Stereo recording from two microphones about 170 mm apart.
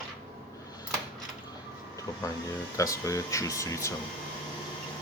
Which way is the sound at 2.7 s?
20° left (ahead or behind).